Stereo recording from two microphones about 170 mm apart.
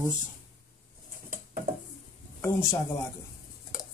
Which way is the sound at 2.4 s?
15° left (ahead or behind).